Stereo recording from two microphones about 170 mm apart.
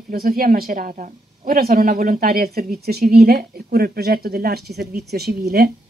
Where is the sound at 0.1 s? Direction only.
60° right (ahead or behind).